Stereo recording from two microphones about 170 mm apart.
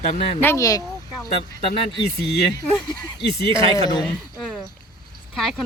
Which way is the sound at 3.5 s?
25° left (ahead or behind).